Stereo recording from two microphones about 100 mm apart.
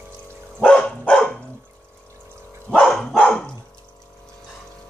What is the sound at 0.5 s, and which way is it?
Dog, 10° left (ahead or behind).